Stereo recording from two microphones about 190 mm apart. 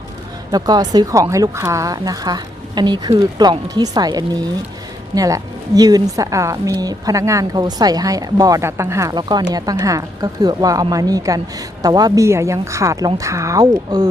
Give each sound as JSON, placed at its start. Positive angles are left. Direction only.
{"t": 0.5, "sound": "a woman's voice", "side_deg": -20}